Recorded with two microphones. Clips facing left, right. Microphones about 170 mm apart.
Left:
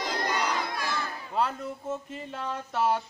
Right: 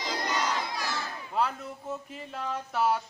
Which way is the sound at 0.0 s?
55° left (ahead or behind).